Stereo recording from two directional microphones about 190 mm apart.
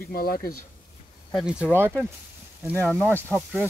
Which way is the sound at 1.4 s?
5° right (ahead or behind).